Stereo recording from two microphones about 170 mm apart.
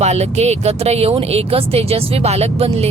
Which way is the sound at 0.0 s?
40° right (ahead or behind).